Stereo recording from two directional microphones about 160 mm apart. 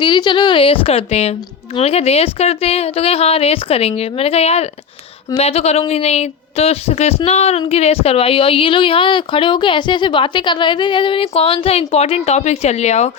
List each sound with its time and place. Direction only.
0.0 s speech: 30° left (ahead or behind)